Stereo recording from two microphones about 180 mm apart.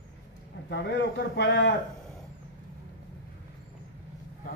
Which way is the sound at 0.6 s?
75° left (ahead or behind).